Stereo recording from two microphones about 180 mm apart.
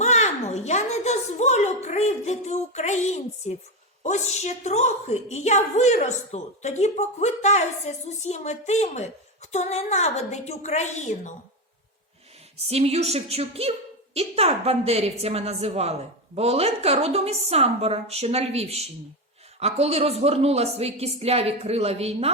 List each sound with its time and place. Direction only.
0.0 s a child's voice: 40° left (ahead or behind)
12.6 s a woman's voice: 35° right (ahead or behind)